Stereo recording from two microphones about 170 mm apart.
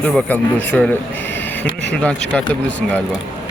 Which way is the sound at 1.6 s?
90° left.